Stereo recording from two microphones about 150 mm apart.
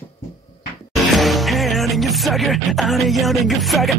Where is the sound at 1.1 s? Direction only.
Centre (ahead or behind).